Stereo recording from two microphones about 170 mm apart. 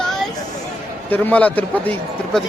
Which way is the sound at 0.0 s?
Centre (ahead or behind).